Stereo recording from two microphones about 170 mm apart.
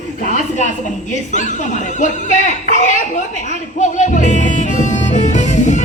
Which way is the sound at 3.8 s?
45° left (ahead or behind).